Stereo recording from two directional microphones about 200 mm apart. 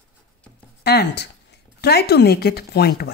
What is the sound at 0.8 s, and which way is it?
A woman's voice, 55° left (ahead or behind).